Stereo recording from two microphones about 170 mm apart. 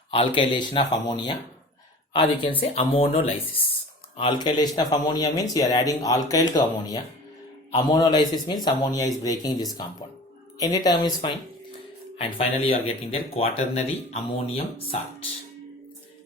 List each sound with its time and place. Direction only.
0.1 s speech: 30° left (ahead or behind)